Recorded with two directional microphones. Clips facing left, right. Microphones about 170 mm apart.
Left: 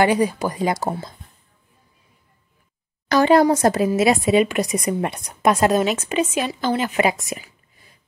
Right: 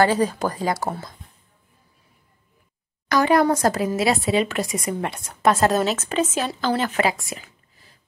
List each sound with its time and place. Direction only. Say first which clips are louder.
0.0 s speech: left 1 dB; 15° left (ahead or behind)
3.1 s speech: left 3 dB; 30° left (ahead or behind)